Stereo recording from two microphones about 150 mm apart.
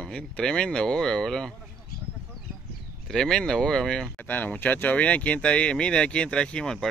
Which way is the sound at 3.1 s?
5° left (ahead or behind).